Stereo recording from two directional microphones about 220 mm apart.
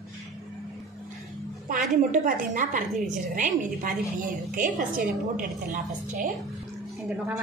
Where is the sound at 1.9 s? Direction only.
35° right (ahead or behind).